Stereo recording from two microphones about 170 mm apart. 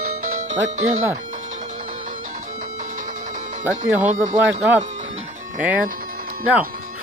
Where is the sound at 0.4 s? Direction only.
45° right (ahead or behind).